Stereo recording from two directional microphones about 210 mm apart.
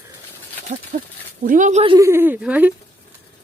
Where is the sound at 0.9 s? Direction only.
35° right (ahead or behind).